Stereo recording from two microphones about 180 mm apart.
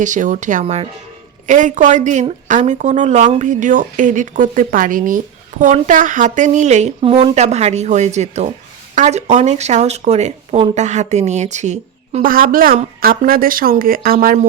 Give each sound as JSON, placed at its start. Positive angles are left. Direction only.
{"t": 0.0, "sound": "speech", "side_deg": -45}